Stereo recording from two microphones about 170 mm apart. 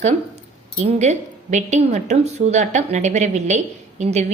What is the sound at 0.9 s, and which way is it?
A woman's voice, 40° right (ahead or behind).